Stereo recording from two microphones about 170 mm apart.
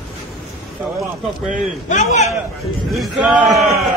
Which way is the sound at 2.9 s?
Centre (ahead or behind).